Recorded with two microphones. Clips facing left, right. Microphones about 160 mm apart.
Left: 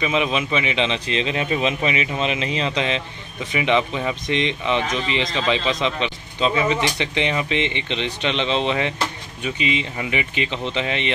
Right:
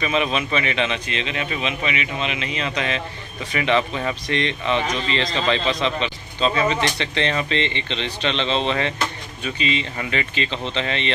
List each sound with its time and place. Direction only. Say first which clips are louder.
0.0 s a man's voice: left 1 dB; 15° left (ahead or behind)